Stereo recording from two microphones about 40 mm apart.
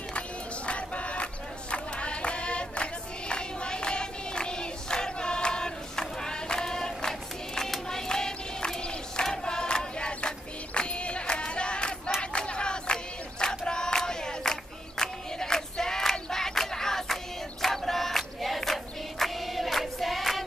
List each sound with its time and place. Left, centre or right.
0.7 s a sound: left; by 7.7 s centre
7.9 s crowd: centre
9.2 s choir: centre
12.2 s battle cry: left; by 20.4 s centre